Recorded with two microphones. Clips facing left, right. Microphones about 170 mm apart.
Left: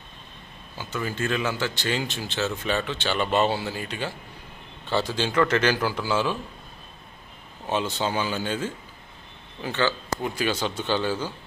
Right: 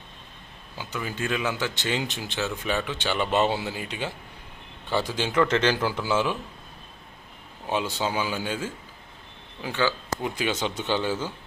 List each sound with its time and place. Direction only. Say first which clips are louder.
0.8 s a man's voice: left 2 dB; 15° right (ahead or behind)
7.7 s a man's voice: left 1 dB; 10° right (ahead or behind)